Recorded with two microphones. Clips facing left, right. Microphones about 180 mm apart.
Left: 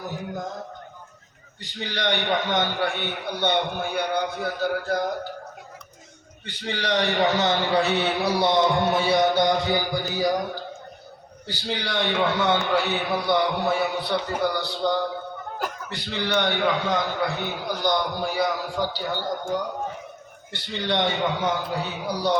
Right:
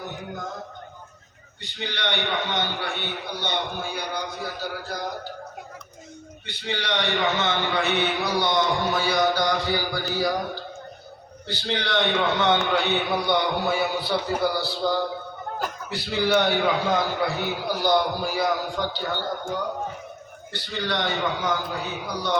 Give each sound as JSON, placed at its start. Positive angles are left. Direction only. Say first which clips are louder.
{"t": 1.6, "sound": "a man's voice", "louder": "left 3 dB", "side_deg": 45}
{"t": 6.4, "sound": "a man's voice", "louder": "left 1 dB", "side_deg": 45}
{"t": 20.5, "sound": "a man's voice", "louder": "left 2 dB", "side_deg": 25}